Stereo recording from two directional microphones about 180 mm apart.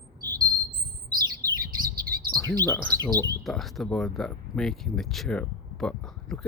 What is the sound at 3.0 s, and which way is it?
Speech, 15° left (ahead or behind).